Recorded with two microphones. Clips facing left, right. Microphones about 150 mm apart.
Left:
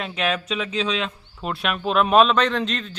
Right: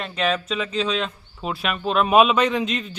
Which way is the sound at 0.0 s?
Centre (ahead or behind).